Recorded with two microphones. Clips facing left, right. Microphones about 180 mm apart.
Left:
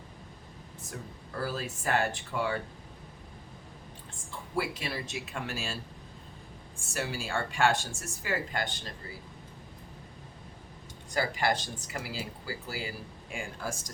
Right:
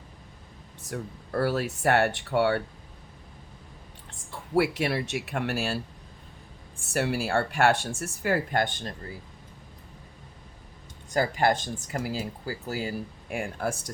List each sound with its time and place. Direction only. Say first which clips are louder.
0.8 s speech: right 8 dB; 75° right (ahead or behind)
4.5 s speech: right 9 dB; 70° right (ahead or behind)
6.9 s speech: right 8 dB; 65° right (ahead or behind)
11.1 s speech: right 5 dB; 45° right (ahead or behind)
13.3 s speech: right 7 dB; 65° right (ahead or behind)